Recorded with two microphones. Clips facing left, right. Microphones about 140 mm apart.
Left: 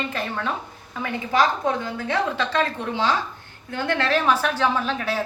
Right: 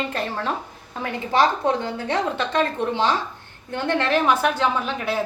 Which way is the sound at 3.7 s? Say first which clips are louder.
Right 1 dB; 20° right (ahead or behind).